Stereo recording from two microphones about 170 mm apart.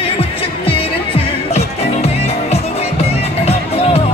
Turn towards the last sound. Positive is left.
turn(degrees=35)  # may be behind; listen again after turning